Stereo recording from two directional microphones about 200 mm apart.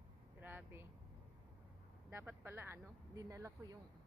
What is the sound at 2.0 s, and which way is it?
Speech, 10° right (ahead or behind).